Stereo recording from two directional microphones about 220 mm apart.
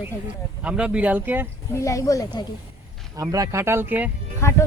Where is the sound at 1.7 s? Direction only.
15° left (ahead or behind).